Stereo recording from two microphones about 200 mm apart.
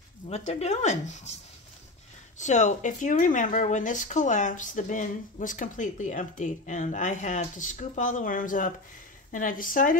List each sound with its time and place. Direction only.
0.3 s speech: 35° left (ahead or behind)